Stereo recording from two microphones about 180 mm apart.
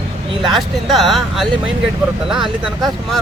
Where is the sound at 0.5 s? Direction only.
Centre (ahead or behind).